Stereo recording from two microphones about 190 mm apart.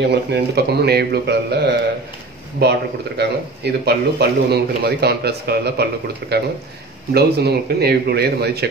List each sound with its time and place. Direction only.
0.1 s speech: 60° right (ahead or behind)
3.2 s speech: 60° right (ahead or behind)